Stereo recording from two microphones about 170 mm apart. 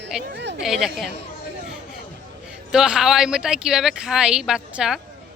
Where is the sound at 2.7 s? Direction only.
5° right (ahead or behind).